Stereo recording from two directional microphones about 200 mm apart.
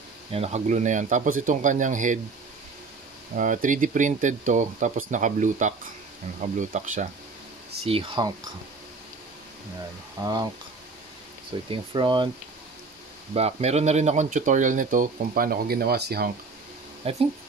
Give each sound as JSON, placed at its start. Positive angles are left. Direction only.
{"t": 0.3, "sound": "speech", "side_deg": -35}
{"t": 3.3, "sound": "speech", "side_deg": -40}
{"t": 7.8, "sound": "speech", "side_deg": -25}
{"t": 10.2, "sound": "speech", "side_deg": -20}
{"t": 11.7, "sound": "speech", "side_deg": -25}
{"t": 13.3, "sound": "speech", "side_deg": -30}
{"t": 17.0, "sound": "speech", "side_deg": -30}